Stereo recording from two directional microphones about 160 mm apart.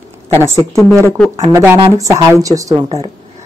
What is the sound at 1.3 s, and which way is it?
A woman's voice, 15° right (ahead or behind).